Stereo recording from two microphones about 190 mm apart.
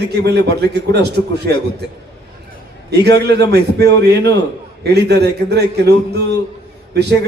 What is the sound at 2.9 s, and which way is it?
A man's voice, 60° right (ahead or behind).